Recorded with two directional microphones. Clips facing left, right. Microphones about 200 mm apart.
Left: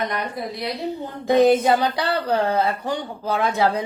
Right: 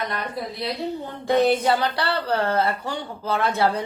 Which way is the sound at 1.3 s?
15° left (ahead or behind).